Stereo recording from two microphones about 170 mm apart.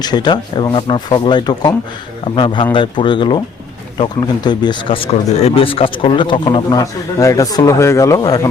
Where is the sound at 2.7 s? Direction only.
30° left (ahead or behind).